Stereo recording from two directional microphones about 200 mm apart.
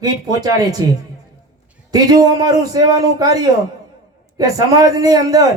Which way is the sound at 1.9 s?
20° right (ahead or behind).